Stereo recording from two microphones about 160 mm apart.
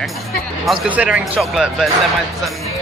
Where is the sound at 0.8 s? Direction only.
10° right (ahead or behind).